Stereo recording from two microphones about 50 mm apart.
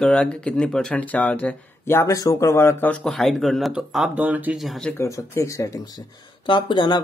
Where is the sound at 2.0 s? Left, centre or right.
Left.